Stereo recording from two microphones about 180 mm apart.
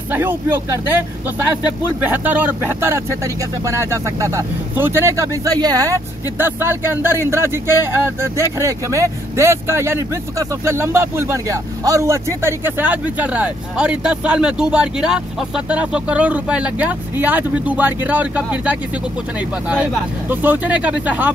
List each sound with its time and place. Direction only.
0.1 s a man's voice: 10° right (ahead or behind)
2.0 s a man's voice: 10° right (ahead or behind)